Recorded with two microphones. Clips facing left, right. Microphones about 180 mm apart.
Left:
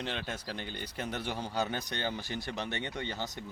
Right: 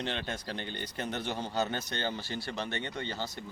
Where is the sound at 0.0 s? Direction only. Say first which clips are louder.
Right 2 dB; 5° left (ahead or behind).